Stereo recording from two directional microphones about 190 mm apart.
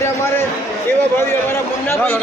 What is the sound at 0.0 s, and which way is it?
A man's voice, 15° left (ahead or behind).